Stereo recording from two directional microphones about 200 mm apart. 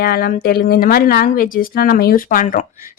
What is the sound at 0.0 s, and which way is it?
Speech, 50° left (ahead or behind).